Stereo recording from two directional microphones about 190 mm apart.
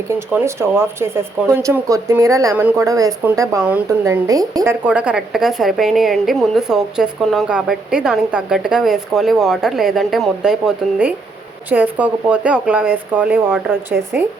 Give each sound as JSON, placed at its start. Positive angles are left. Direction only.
{"t": 0.1, "sound": "a woman's voice", "side_deg": -15}